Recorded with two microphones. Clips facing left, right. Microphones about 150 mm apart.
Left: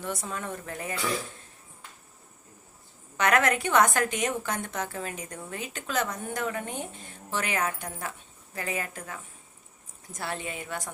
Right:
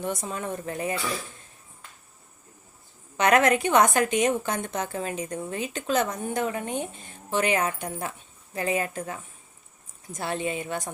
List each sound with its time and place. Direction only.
0.0 s a woman's voice: 20° right (ahead or behind)
3.2 s a woman's voice: 20° right (ahead or behind)